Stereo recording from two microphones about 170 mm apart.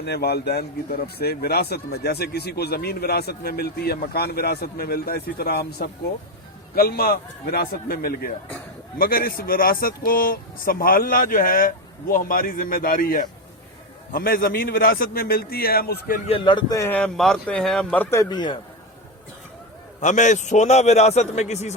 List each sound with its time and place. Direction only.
0.0 s speech: 75° left (ahead or behind)
16.2 s speech: 30° left (ahead or behind)
17.0 s a man's voice: 5° left (ahead or behind); by 18.6 s 25° left (ahead or behind)
20.0 s a man's voice: 45° left (ahead or behind)